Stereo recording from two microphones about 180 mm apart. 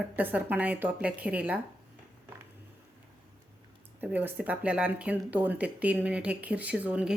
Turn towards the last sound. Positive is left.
turn(degrees=-5)  # may be behind; listen again after turning